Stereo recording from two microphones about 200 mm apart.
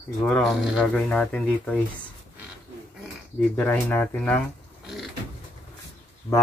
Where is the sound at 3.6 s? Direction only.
10° left (ahead or behind).